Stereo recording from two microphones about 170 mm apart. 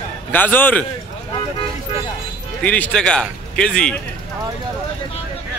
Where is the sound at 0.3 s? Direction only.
10° left (ahead or behind).